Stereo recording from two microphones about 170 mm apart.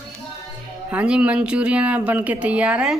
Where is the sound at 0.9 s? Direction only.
5° right (ahead or behind).